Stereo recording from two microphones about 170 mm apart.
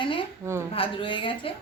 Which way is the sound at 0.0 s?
30° left (ahead or behind).